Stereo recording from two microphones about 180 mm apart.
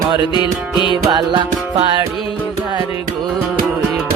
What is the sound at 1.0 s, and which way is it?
Music, 25° right (ahead or behind).